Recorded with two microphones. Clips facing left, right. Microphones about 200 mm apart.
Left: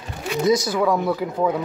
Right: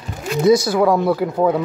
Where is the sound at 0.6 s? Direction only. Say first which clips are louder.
Right 5 dB; 35° right (ahead or behind).